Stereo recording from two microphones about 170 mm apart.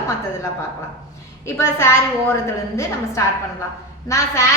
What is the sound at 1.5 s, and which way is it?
A woman's voice, 15° left (ahead or behind).